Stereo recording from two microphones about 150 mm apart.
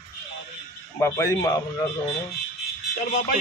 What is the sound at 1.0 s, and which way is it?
Speech, 15° left (ahead or behind).